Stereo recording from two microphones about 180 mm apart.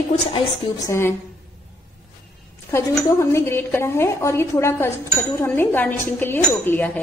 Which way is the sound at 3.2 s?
15° left (ahead or behind).